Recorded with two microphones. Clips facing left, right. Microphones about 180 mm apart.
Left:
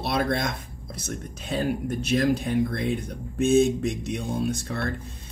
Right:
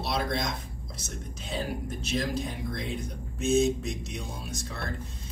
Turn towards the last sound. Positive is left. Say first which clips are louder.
# left 10 dB
turn(degrees=55)  # may be behind; listen again after turning